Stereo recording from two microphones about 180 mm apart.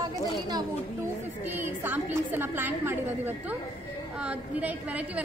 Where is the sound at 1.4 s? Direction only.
10° right (ahead or behind).